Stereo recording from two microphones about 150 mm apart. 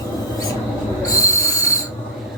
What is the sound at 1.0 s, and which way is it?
Train wheels squealing, 20° left (ahead or behind).